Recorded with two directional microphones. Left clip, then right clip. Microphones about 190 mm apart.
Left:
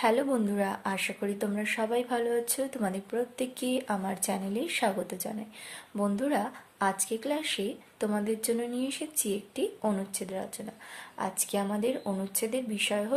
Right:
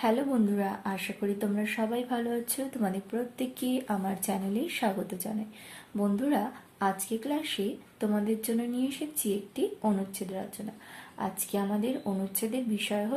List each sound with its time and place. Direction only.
0.0 s speech: 30° left (ahead or behind)